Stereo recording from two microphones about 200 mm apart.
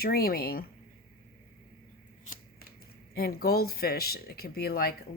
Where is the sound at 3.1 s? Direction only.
50° left (ahead or behind).